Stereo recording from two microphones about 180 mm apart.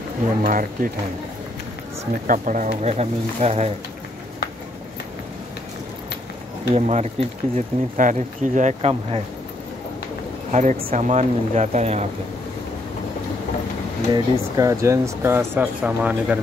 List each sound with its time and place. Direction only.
0.4 s speech: 50° right (ahead or behind)
2.2 s speech: 45° right (ahead or behind)
6.7 s speech: 35° right (ahead or behind)
10.5 s speech: 40° right (ahead or behind)
14.1 s speech: 20° right (ahead or behind)